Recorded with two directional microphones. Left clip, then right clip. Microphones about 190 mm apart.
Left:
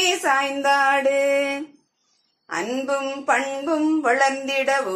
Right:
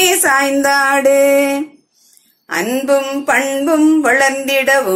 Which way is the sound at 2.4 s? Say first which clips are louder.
Right 9 dB; 45° right (ahead or behind).